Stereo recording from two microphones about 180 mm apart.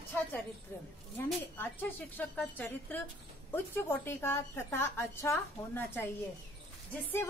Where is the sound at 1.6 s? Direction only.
10° left (ahead or behind).